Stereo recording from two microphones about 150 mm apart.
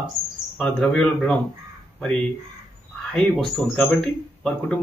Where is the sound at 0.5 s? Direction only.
5° left (ahead or behind).